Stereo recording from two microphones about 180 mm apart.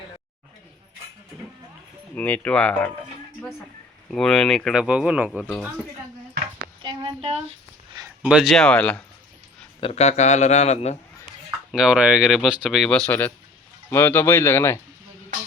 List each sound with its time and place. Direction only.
2.1 s speech: 10° left (ahead or behind)
4.1 s speech: 5° left (ahead or behind)
6.8 s a woman's voice: 25° right (ahead or behind)
8.2 s speech: 5° right (ahead or behind)
9.8 s a man's voice: 35° left (ahead or behind)
11.7 s speech: 5° right (ahead or behind); by 14.8 s 15° left (ahead or behind)